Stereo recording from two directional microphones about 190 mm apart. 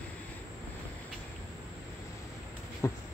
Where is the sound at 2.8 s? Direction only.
15° left (ahead or behind).